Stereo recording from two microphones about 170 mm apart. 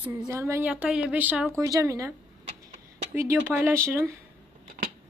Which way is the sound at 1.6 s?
20° right (ahead or behind).